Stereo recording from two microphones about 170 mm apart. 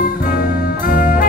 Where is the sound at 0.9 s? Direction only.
50° left (ahead or behind).